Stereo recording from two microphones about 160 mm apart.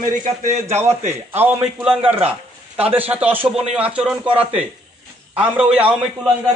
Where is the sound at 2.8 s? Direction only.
10° right (ahead or behind).